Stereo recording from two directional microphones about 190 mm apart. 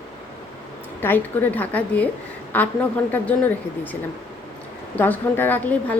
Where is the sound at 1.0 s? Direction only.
10° left (ahead or behind).